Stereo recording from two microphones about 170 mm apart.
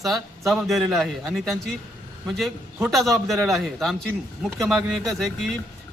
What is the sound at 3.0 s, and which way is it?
Speech, 15° right (ahead or behind).